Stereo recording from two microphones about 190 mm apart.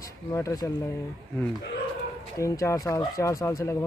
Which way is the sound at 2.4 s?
15° left (ahead or behind).